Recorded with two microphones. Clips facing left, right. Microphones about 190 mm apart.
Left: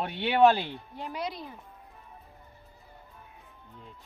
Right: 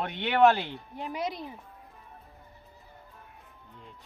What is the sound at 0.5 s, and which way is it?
Speech, 20° right (ahead or behind).